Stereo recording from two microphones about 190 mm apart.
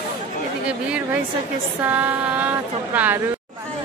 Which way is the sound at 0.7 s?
5° right (ahead or behind).